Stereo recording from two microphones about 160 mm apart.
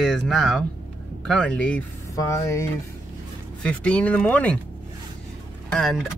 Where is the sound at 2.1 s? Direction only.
20° left (ahead or behind).